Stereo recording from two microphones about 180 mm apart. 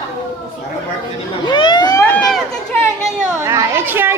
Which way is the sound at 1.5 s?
25° left (ahead or behind).